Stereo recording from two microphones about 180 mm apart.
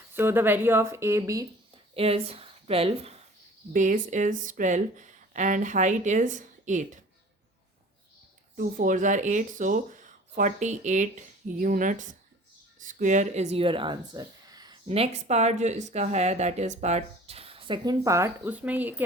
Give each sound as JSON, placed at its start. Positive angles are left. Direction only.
{"t": 0.1, "sound": "speech", "side_deg": -10}
{"t": 1.7, "sound": "speech", "side_deg": -30}
{"t": 3.7, "sound": "speech", "side_deg": -45}
{"t": 8.5, "sound": "speech", "side_deg": -45}
{"t": 14.8, "sound": "a woman's voice", "side_deg": -35}